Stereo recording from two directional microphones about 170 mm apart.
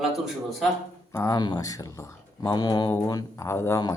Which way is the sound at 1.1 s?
20° left (ahead or behind).